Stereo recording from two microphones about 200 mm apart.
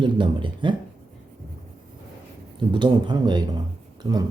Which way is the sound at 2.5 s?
25° right (ahead or behind).